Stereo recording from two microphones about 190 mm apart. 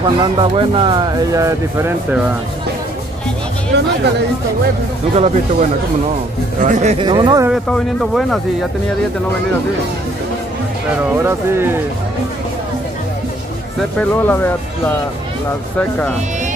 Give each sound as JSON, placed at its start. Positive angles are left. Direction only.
{"t": 0.2, "sound": "speech", "side_deg": -25}
{"t": 3.7, "sound": "a sound", "side_deg": -65}
{"t": 5.1, "sound": "speech", "side_deg": -35}
{"t": 7.1, "sound": "speech", "side_deg": -20}
{"t": 7.7, "sound": "speech", "side_deg": 0}
{"t": 11.2, "sound": "speech", "side_deg": -15}
{"t": 13.7, "sound": "speech", "side_deg": 10}